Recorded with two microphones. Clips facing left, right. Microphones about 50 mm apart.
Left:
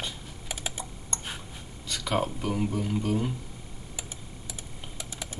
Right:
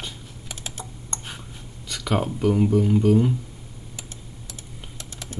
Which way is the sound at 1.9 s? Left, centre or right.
Centre.